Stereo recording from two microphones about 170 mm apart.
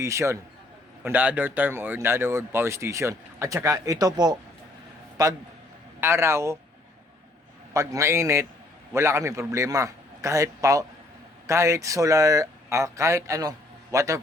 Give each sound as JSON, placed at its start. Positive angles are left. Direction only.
{"t": 0.0, "sound": "speech", "side_deg": -15}
{"t": 7.7, "sound": "speech", "side_deg": -15}